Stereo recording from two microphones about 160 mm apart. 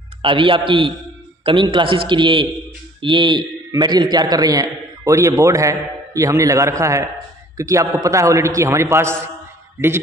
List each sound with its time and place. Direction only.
0.2 s a man's voice: 30° right (ahead or behind); by 9.1 s 15° right (ahead or behind)